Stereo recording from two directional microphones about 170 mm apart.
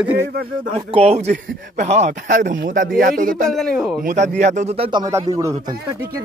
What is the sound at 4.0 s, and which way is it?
Speech, 50° right (ahead or behind).